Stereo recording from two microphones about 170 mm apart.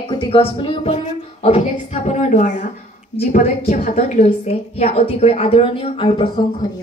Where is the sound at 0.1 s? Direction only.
30° left (ahead or behind).